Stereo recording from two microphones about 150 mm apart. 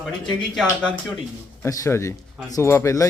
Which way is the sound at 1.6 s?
20° left (ahead or behind).